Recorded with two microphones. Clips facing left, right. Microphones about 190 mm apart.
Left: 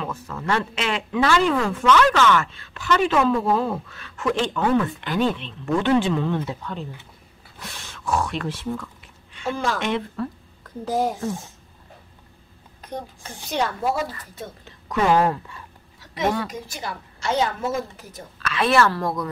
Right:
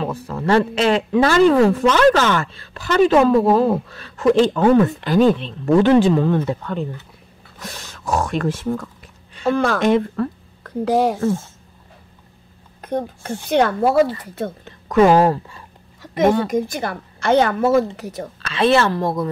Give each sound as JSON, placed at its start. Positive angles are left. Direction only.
{"t": 0.0, "sound": "speech", "side_deg": -35}
{"t": 7.6, "sound": "speech", "side_deg": -40}
{"t": 9.5, "sound": "a woman's voice", "side_deg": -60}
{"t": 9.8, "sound": "speech", "side_deg": -40}
{"t": 10.1, "sound": "a woman's voice", "side_deg": -70}
{"t": 12.8, "sound": "a woman's voice", "side_deg": -55}
{"t": 16.0, "sound": "a sound", "side_deg": -50}
{"t": 16.4, "sound": "a woman's voice", "side_deg": -55}
{"t": 18.4, "sound": "a woman's voice", "side_deg": -25}